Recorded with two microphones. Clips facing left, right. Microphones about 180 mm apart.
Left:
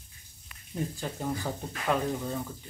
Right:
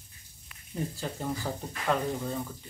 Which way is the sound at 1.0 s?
5° left (ahead or behind).